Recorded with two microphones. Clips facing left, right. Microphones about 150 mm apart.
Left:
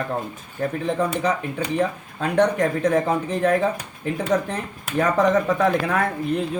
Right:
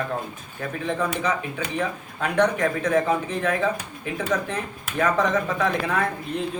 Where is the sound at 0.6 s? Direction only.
35° left (ahead or behind).